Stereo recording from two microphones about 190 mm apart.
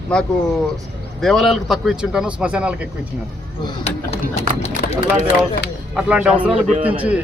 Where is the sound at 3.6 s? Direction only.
25° left (ahead or behind).